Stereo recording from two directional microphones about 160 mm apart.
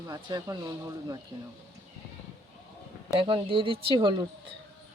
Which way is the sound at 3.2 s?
30° right (ahead or behind).